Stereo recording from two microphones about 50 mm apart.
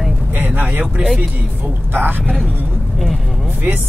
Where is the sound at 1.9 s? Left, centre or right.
Right.